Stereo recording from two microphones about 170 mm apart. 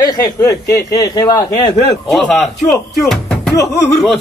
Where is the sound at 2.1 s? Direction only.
Centre (ahead or behind).